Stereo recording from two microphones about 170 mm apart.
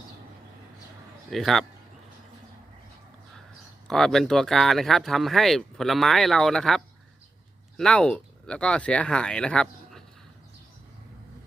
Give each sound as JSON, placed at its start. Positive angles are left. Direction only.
{"t": 1.3, "sound": "speech", "side_deg": 0}
{"t": 3.8, "sound": "speech", "side_deg": 5}